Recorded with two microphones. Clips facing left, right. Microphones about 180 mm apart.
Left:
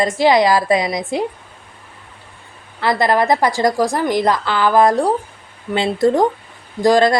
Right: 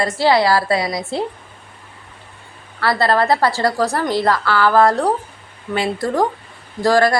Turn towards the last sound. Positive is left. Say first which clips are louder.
# left 2 dB
turn(degrees=20)  # may be behind; listen again after turning